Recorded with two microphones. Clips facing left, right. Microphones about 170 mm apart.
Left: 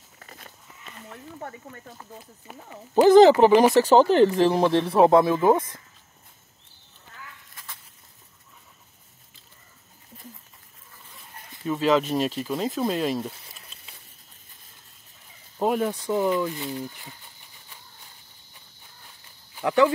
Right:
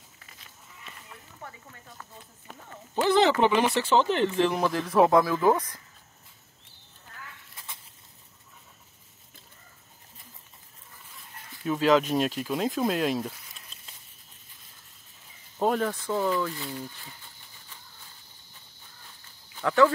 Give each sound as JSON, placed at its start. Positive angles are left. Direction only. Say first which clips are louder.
{"t": 0.2, "sound": "cattle", "louder": "left 11 dB", "side_deg": 50}
{"t": 2.0, "sound": "speech", "louder": "left 4 dB", "side_deg": 15}
{"t": 2.9, "sound": "speech", "louder": "left 9 dB", "side_deg": 40}
{"t": 7.5, "sound": "a sound", "louder": "even", "side_deg": -25}
{"t": 11.1, "sound": "speech", "louder": "left 2 dB", "side_deg": 0}
{"t": 15.6, "sound": "speech", "louder": "left 2 dB", "side_deg": 10}
{"t": 19.5, "sound": "speech", "louder": "left 1 dB", "side_deg": 15}